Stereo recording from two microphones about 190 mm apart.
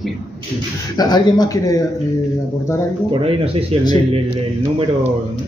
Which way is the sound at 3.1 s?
30° right (ahead or behind).